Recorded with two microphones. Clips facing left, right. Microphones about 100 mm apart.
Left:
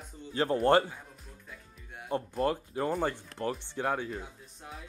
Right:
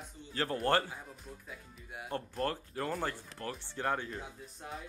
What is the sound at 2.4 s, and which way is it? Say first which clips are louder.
Speech: left 7 dB; 15° left (ahead or behind).